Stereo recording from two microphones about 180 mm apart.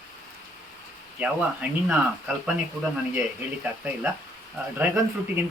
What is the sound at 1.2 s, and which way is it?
A man's voice, 5° right (ahead or behind).